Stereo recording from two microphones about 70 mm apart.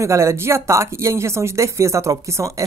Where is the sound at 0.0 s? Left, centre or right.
Right.